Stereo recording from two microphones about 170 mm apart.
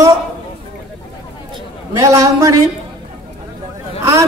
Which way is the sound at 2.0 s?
20° right (ahead or behind).